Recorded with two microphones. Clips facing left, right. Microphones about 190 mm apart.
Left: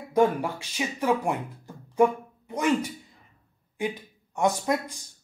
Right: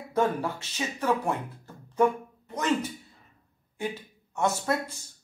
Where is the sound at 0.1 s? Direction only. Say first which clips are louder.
Left 4 dB; 15° left (ahead or behind).